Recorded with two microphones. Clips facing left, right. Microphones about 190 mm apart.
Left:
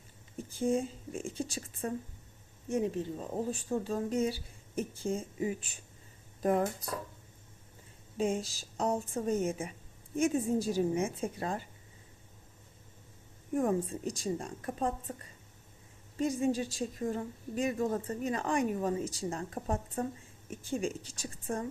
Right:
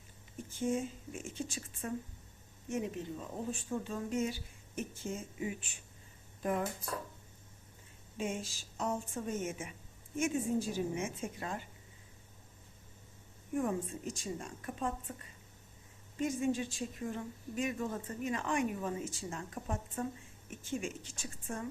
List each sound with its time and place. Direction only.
0.5 s a woman's voice: 35° left (ahead or behind)
8.2 s a woman's voice: 35° left (ahead or behind)
13.6 s a woman's voice: 35° left (ahead or behind)